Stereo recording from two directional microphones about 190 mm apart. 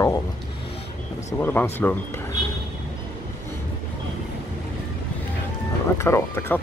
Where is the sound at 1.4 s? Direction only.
10° left (ahead or behind).